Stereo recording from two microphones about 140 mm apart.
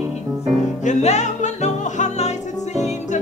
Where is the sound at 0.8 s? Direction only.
55° left (ahead or behind).